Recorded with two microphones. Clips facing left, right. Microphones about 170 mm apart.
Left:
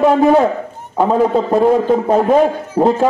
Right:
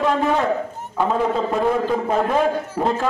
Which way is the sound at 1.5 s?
35° left (ahead or behind).